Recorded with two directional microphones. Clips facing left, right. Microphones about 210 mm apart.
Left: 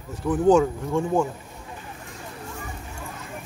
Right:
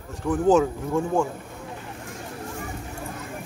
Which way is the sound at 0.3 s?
Centre (ahead or behind).